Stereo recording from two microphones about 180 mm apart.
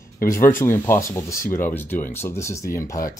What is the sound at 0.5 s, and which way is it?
Speech, 15° left (ahead or behind).